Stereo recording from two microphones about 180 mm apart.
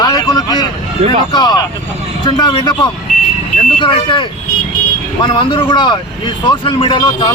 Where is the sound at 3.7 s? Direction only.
25° left (ahead or behind).